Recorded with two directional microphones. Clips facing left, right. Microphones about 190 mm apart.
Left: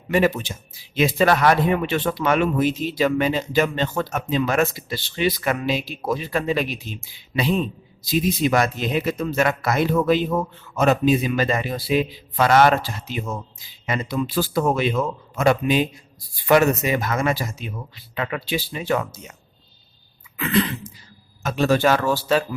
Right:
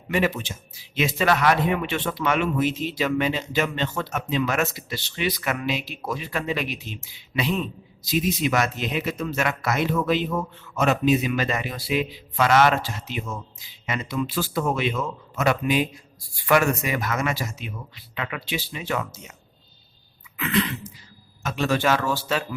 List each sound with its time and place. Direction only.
0.1 s speech: 40° left (ahead or behind)
20.3 s a sound: 35° left (ahead or behind)
21.4 s speech: 40° left (ahead or behind)